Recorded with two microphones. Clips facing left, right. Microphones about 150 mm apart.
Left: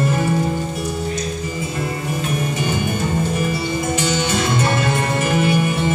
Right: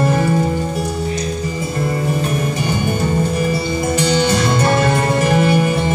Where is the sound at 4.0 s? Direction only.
35° right (ahead or behind).